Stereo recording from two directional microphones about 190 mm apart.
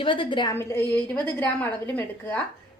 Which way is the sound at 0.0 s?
25° left (ahead or behind).